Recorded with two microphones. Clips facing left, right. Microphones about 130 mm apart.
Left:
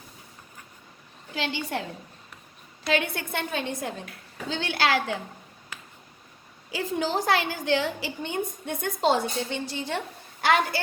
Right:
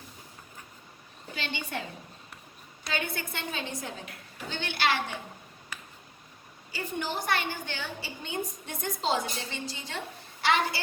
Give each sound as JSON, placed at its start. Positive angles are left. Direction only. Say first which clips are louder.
{"t": 2.8, "sound": "a woman's voice", "louder": "left 7 dB", "side_deg": 60}
{"t": 4.4, "sound": "a woman's voice", "louder": "left 3 dB", "side_deg": 90}
{"t": 6.7, "sound": "a woman's voice", "louder": "left 6 dB", "side_deg": 90}
{"t": 8.3, "sound": "a woman's voice", "louder": "left 3 dB", "side_deg": 55}